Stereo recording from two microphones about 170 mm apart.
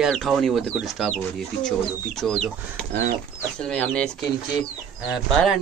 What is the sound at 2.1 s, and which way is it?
Speech, centre (ahead or behind).